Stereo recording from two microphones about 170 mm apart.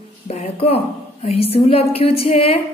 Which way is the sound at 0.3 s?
35° left (ahead or behind).